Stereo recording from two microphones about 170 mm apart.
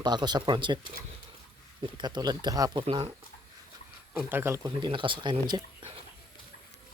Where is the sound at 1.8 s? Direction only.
25° right (ahead or behind).